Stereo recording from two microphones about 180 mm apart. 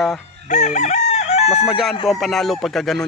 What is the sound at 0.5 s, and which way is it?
Crowing, 40° left (ahead or behind).